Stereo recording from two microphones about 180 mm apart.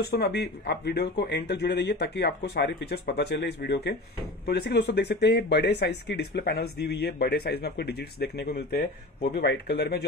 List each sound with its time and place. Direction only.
0.0 s speech: 60° left (ahead or behind)